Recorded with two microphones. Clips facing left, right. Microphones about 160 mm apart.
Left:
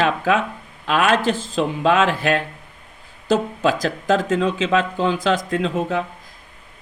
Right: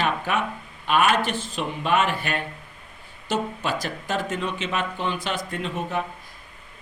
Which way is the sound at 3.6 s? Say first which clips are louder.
Left 8 dB; 90° left.